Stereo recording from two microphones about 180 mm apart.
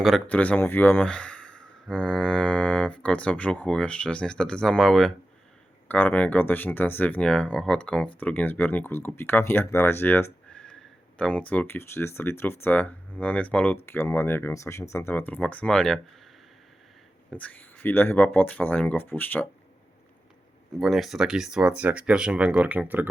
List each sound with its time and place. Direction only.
0.0 s speech: 5° left (ahead or behind)
17.3 s speech: 10° left (ahead or behind)
20.7 s speech: centre (ahead or behind)